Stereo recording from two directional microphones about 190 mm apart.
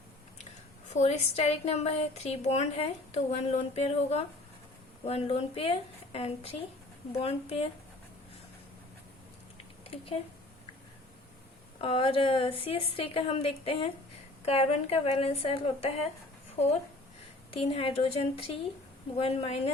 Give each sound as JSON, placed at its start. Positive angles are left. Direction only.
{"t": 0.9, "sound": "a woman's voice", "side_deg": 35}
{"t": 11.8, "sound": "a woman's voice", "side_deg": 30}
{"t": 17.6, "sound": "a woman's voice", "side_deg": 30}